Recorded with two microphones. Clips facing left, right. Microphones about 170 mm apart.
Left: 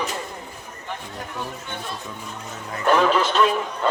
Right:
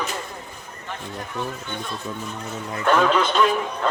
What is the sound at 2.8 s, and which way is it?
Speech, 5° left (ahead or behind).